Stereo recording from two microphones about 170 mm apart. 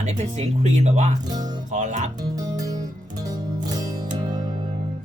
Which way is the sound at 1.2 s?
25° right (ahead or behind).